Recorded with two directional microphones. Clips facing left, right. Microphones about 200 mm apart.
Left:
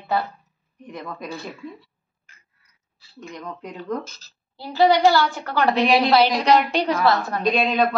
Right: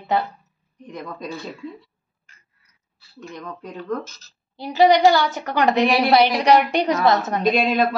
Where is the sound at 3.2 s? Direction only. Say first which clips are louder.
Even; 15° left (ahead or behind).